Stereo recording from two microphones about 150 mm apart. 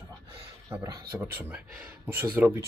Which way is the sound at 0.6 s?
20° right (ahead or behind).